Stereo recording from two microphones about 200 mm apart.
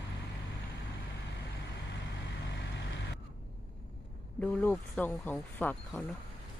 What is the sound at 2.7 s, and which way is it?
Vehicle, 60° left (ahead or behind).